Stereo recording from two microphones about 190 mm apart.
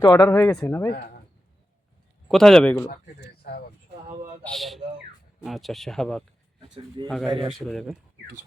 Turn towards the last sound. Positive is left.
turn(degrees=0)  # may be behind; listen again after turning